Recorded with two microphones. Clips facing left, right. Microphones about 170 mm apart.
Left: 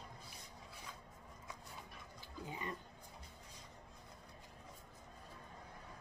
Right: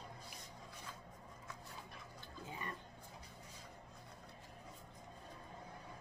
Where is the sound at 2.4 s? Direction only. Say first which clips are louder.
Left 2 dB; 20° left (ahead or behind).